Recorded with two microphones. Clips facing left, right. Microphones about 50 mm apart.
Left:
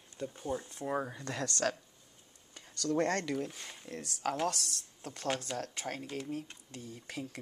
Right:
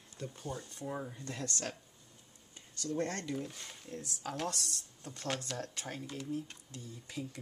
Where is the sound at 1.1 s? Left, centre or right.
Left.